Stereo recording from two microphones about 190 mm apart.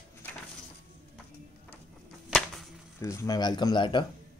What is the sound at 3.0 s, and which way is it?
Speech, 15° left (ahead or behind).